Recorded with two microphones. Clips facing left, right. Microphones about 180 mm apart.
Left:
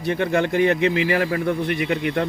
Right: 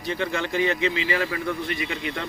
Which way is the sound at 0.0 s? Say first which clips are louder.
Left 6 dB; 55° left (ahead or behind).